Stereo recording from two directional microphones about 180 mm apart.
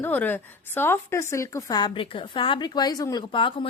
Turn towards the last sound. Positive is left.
turn(degrees=30)  # may be behind; listen again after turning